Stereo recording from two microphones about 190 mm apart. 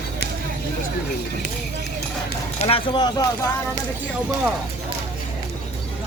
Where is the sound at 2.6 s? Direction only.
25° left (ahead or behind).